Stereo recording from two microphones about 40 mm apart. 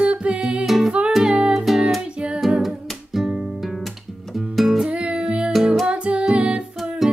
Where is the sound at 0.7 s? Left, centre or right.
Centre.